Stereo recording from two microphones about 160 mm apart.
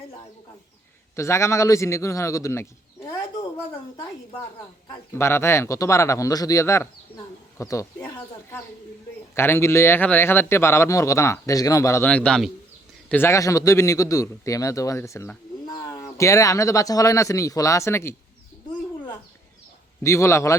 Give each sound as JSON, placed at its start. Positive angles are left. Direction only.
{"t": 1.1, "sound": "a man's voice", "side_deg": 20}
{"t": 4.9, "sound": "a man's voice", "side_deg": 15}
{"t": 20.0, "sound": "a man's voice", "side_deg": 20}